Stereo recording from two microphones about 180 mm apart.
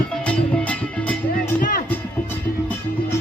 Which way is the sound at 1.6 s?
55° left (ahead or behind).